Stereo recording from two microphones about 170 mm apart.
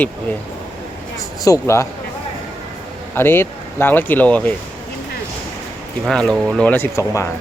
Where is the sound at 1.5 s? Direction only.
15° left (ahead or behind).